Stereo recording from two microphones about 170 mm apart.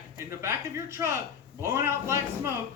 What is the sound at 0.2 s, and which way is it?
A man's voice, 15° right (ahead or behind).